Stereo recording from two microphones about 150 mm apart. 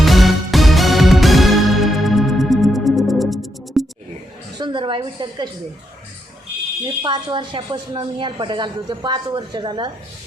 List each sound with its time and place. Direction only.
0.0 s music: centre (ahead or behind)
4.5 s a sound: 30° right (ahead or behind)
6.8 s speech: 30° right (ahead or behind)